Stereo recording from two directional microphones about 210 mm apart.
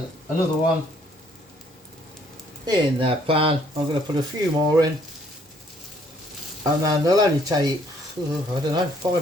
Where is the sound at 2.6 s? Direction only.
25° right (ahead or behind).